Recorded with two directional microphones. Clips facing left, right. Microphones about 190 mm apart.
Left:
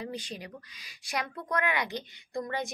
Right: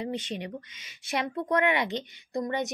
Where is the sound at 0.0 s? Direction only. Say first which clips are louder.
Right 5 dB; 25° right (ahead or behind).